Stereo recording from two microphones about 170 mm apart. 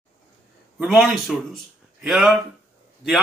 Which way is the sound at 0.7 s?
Centre (ahead or behind).